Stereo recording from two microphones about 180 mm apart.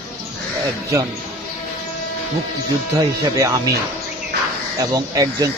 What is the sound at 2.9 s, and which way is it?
Speech, 20° right (ahead or behind).